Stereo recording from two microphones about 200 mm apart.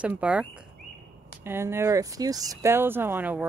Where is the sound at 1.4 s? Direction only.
10° right (ahead or behind).